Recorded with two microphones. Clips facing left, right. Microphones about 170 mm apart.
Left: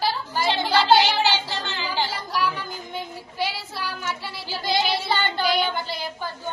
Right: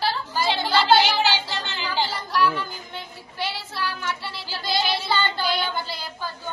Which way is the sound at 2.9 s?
10° left (ahead or behind).